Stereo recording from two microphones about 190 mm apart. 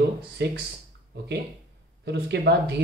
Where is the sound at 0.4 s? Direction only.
60° right (ahead or behind).